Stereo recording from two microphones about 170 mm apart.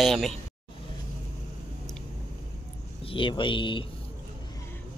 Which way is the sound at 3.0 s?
30° left (ahead or behind).